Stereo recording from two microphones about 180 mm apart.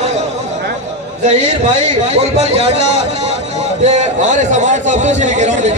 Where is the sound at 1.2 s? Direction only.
40° right (ahead or behind).